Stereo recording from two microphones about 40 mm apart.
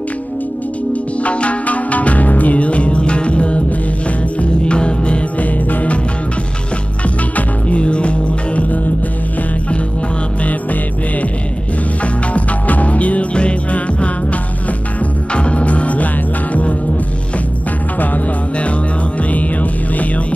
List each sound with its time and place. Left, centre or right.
1.2 s music: left
5.4 s music: left
7.3 s music: left
10.4 s music: left
15.3 s music: left
17.9 s music: left
19.3 s music: left